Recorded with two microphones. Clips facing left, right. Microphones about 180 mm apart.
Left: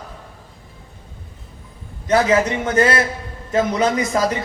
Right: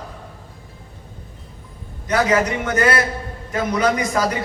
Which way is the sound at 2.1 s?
25° left (ahead or behind).